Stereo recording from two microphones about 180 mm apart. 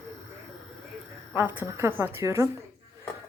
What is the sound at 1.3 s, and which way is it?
A woman's voice, 10° right (ahead or behind).